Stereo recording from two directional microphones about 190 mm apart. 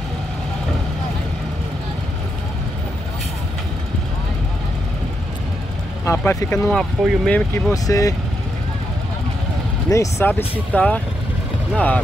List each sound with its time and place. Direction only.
6.0 s speech: 15° left (ahead or behind)
7.7 s speech: 20° left (ahead or behind)
9.8 s speech: 15° left (ahead or behind)